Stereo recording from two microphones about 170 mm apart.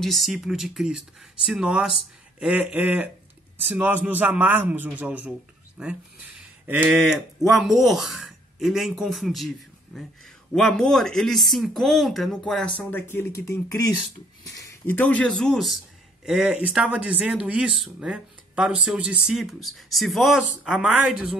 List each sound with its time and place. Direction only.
0.0 s a man's voice: centre (ahead or behind)
10.5 s speech: centre (ahead or behind)